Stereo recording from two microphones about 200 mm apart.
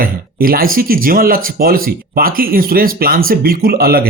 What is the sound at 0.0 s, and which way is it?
Speech, 45° right (ahead or behind).